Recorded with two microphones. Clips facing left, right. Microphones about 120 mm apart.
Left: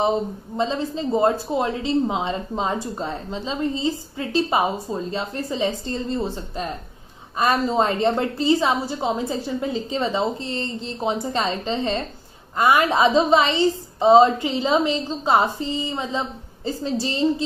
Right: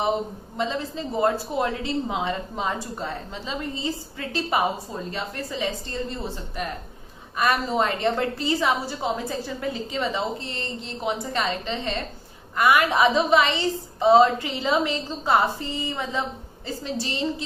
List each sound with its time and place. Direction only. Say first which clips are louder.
0.0 s speech: left 3 dB; 30° left (ahead or behind)
17.2 s speech: left 8 dB; 25° left (ahead or behind)